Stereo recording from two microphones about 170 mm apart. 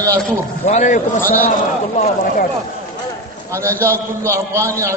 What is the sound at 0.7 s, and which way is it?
A man's voice, 45° left (ahead or behind).